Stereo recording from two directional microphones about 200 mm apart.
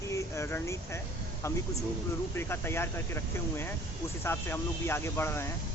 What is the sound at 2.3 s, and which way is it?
Speech, 10° left (ahead or behind).